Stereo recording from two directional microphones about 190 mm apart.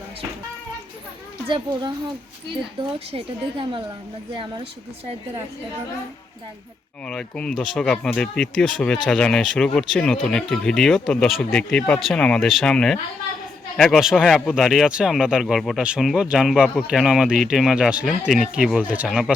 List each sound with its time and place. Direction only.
1.5 s a woman's voice: 25° right (ahead or behind)
7.0 s speech: 5° left (ahead or behind)